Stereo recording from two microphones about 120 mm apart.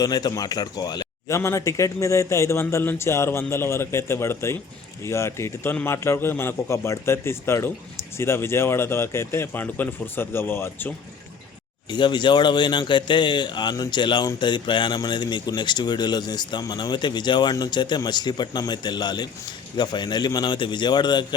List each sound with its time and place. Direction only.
0.0 s speech: 30° left (ahead or behind)
1.4 s a man's voice: 25° left (ahead or behind)
11.9 s speech: 40° left (ahead or behind)